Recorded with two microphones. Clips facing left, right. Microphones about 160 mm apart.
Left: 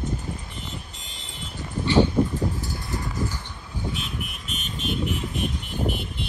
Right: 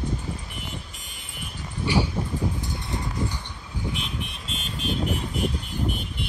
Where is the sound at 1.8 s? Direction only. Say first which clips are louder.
Left 5 dB; 10° right (ahead or behind).